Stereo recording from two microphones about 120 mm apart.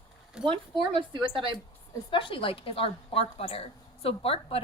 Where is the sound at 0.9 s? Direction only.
45° right (ahead or behind).